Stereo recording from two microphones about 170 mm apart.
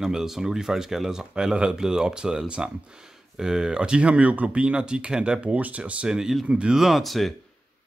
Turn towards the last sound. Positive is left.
turn(degrees=0)  # may be behind; listen again after turning